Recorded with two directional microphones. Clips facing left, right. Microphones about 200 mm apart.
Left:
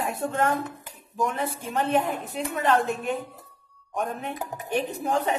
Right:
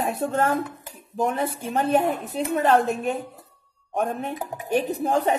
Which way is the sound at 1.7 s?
40° right (ahead or behind).